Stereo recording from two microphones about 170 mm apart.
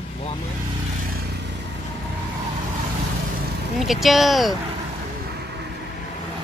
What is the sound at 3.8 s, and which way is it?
Speech, centre (ahead or behind).